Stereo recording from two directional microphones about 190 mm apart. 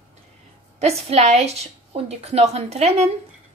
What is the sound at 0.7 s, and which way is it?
A woman's voice, 35° right (ahead or behind).